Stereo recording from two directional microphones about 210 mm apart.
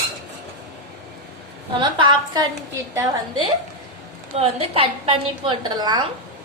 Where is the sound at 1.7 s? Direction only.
20° right (ahead or behind).